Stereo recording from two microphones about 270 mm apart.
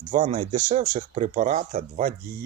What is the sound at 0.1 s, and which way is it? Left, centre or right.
Speech, right.